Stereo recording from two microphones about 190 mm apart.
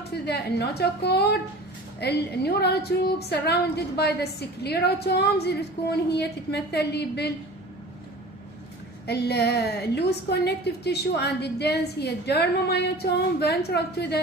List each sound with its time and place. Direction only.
0.1 s a woman's voice: 60° left (ahead or behind)
9.0 s a woman's voice: 60° left (ahead or behind)